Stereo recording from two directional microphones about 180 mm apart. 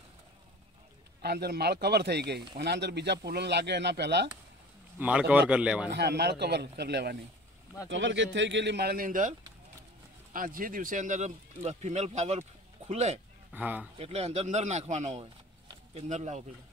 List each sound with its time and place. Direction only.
1.2 s speech: 65° right (ahead or behind)
4.9 s speech: 10° right (ahead or behind)
5.9 s speech: 65° right (ahead or behind)
7.9 s speech: 85° right; by 9.3 s 50° right (ahead or behind)
10.3 s speech: 50° right (ahead or behind)
13.5 s speech: 10° right (ahead or behind)
13.9 s speech: 35° right (ahead or behind)